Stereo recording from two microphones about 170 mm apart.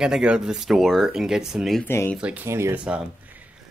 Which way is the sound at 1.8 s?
15° left (ahead or behind).